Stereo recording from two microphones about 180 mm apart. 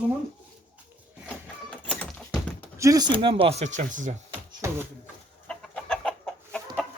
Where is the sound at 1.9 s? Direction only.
5° left (ahead or behind).